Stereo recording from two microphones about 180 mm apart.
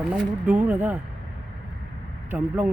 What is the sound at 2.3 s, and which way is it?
Speech, 10° right (ahead or behind).